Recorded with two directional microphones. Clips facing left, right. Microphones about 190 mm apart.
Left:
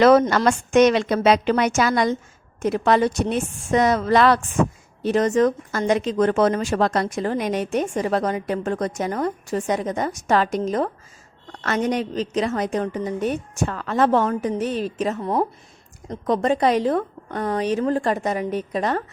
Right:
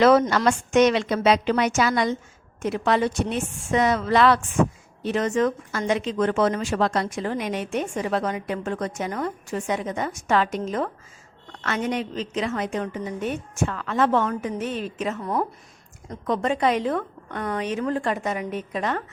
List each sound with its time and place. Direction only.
0.0 s a woman's voice: 45° left (ahead or behind)
15.2 s speech: 25° left (ahead or behind)
16.0 s speech: 35° left (ahead or behind)